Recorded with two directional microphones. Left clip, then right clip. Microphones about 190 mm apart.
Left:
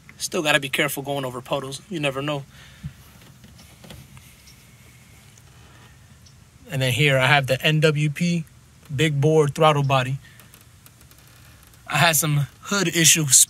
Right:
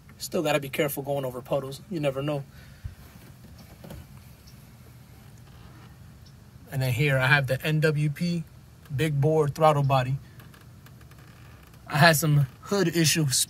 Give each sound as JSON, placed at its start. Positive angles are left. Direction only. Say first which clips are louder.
{"t": 0.2, "sound": "speech", "louder": "left 5 dB", "side_deg": 0}
{"t": 6.7, "sound": "speech", "louder": "left 7 dB", "side_deg": 5}
{"t": 11.9, "sound": "speech", "louder": "left 1 dB", "side_deg": -15}